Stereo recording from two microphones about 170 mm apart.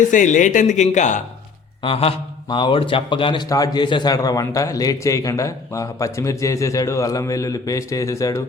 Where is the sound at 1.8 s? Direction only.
30° left (ahead or behind).